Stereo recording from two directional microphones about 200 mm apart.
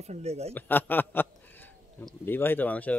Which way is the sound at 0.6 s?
10° left (ahead or behind).